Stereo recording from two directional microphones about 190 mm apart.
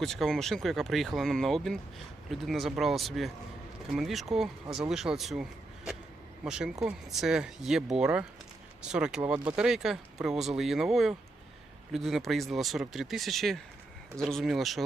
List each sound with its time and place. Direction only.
0.0 s speech: centre (ahead or behind)